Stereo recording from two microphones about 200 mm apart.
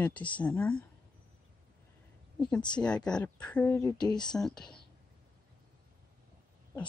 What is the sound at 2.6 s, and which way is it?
Speech, 5° left (ahead or behind).